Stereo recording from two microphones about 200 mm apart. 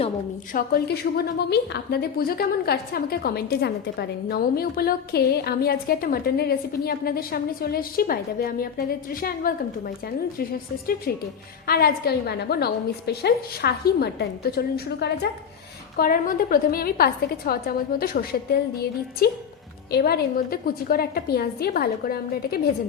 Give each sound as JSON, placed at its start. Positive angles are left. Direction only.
{"t": 0.5, "sound": "a woman's voice", "side_deg": 50}
{"t": 11.6, "sound": "a woman's voice", "side_deg": 50}